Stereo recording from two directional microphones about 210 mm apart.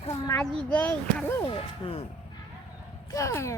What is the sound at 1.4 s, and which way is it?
Speech, 25° left (ahead or behind).